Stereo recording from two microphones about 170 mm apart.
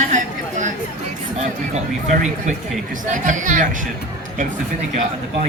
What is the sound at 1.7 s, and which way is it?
Speech, 45° right (ahead or behind).